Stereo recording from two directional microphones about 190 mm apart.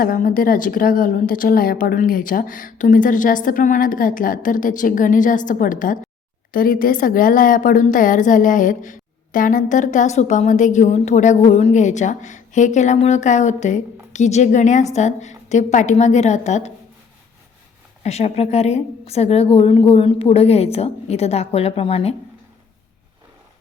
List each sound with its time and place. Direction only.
0.0 s a woman's voice: 50° left (ahead or behind)
18.0 s a woman's voice: 35° left (ahead or behind)